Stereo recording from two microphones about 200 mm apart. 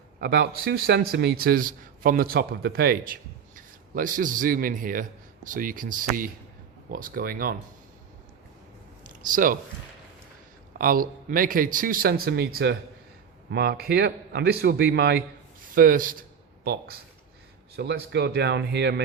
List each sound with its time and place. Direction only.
0.2 s a man's voice: 55° right (ahead or behind)
9.3 s a man's voice: 45° right (ahead or behind)
10.8 s a man's voice: 45° right (ahead or behind)